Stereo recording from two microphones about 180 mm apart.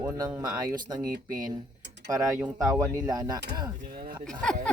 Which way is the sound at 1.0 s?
50° right (ahead or behind).